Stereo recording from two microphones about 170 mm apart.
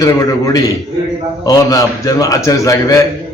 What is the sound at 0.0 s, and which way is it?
A man's voice, 20° left (ahead or behind).